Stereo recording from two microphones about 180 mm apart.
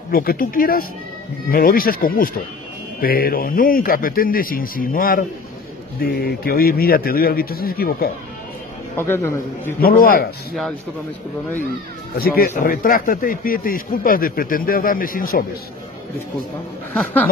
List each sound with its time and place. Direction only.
0.1 s a man's voice: 55° left (ahead or behind)
8.9 s a man's voice: 15° left (ahead or behind)
9.8 s speech: 55° left (ahead or behind)
12.2 s a man's voice: 50° left (ahead or behind)
16.9 s a man's voice: 5° left (ahead or behind)